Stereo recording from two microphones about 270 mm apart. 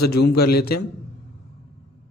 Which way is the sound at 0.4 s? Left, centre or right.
Left.